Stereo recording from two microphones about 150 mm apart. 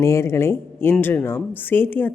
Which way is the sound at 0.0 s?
20° left (ahead or behind).